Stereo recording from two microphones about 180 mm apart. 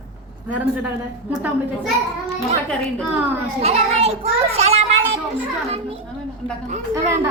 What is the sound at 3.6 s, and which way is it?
A child's voice, 35° right (ahead or behind).